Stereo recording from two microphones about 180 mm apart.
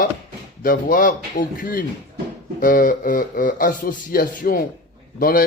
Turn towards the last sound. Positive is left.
turn(degrees=55)  # may be behind; listen again after turning